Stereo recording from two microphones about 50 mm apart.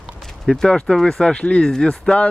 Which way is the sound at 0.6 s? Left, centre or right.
Centre.